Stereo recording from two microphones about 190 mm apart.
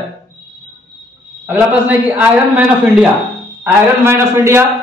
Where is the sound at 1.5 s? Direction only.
10° right (ahead or behind).